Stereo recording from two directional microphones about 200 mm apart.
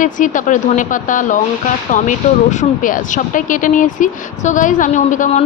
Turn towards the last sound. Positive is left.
turn(degrees=35)  # may be behind; listen again after turning